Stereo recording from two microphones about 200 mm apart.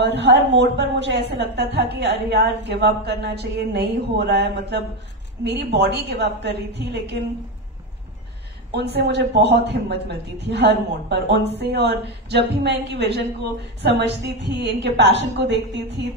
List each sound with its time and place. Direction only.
0.0 s speech: 60° right (ahead or behind)
8.7 s speech: 55° right (ahead or behind)